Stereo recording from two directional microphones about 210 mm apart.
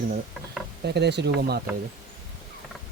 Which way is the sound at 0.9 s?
55° right (ahead or behind).